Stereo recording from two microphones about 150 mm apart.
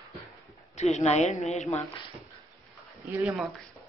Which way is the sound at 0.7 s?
50° left (ahead or behind).